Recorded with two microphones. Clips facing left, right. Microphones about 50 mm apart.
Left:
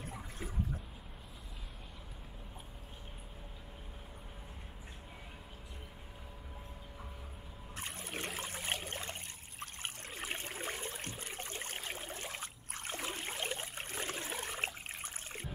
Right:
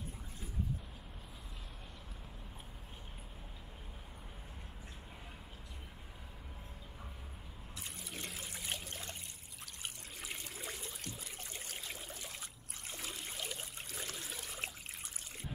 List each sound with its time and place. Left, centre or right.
7.7 s trickle: left
8.4 s a sound: left
9.6 s trickle: left